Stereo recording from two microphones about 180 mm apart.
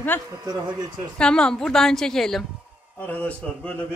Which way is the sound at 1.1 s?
5° left (ahead or behind).